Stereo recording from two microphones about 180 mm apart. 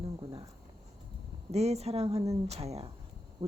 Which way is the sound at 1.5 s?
35° right (ahead or behind).